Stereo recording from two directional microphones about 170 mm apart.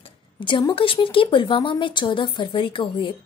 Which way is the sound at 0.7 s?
30° left (ahead or behind).